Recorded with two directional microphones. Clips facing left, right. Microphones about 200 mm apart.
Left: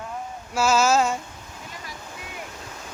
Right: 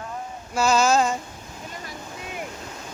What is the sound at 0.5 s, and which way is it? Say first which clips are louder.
Speech: even; 5° left (ahead or behind).